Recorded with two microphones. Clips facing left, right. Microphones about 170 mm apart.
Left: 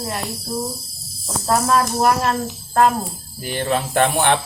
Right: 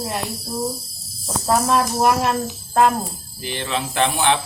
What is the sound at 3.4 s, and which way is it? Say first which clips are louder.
Speech: left 4 dB; 45° left (ahead or behind).